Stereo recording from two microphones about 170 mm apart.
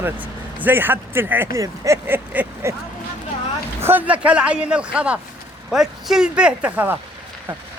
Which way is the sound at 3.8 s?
10° right (ahead or behind).